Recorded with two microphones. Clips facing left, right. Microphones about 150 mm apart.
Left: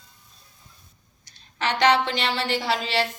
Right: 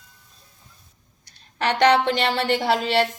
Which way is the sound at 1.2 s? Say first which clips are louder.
Right 3 dB; 60° right (ahead or behind).